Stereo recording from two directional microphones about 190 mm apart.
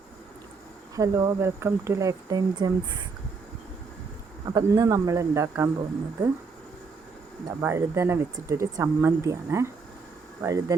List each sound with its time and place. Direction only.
0.9 s speech: 15° right (ahead or behind)
4.4 s speech: 20° right (ahead or behind)
7.4 s speech: 15° right (ahead or behind)